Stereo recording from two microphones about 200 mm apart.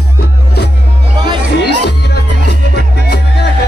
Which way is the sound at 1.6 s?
55° left (ahead or behind).